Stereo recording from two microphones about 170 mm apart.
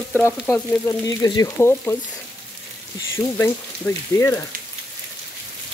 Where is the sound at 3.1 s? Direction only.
15° left (ahead or behind).